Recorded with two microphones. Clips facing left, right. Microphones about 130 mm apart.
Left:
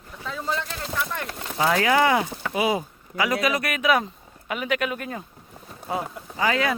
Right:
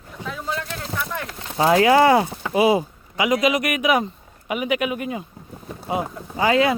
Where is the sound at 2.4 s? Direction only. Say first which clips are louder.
Right 8 dB; 30° right (ahead or behind).